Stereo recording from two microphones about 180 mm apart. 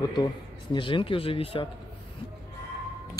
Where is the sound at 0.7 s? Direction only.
30° left (ahead or behind).